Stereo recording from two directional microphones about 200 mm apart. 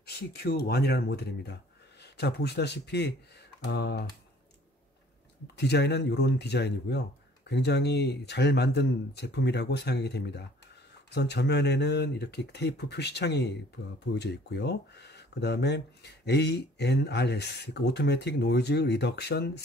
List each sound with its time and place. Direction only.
0.0 s speech: 50° left (ahead or behind)
5.6 s speech: 55° left (ahead or behind)